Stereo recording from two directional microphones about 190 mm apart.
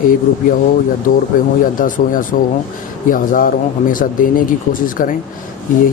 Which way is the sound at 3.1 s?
45° left (ahead or behind).